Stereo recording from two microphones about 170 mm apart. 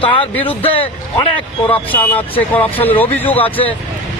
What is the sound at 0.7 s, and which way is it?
Speech, 30° left (ahead or behind).